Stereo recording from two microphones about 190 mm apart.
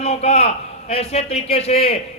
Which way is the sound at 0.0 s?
35° left (ahead or behind).